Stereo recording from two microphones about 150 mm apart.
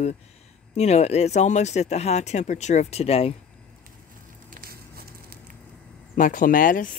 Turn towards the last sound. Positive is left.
turn(degrees=65)  # may be behind; listen again after turning